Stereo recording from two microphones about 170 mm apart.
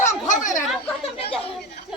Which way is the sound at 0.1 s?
50° left (ahead or behind).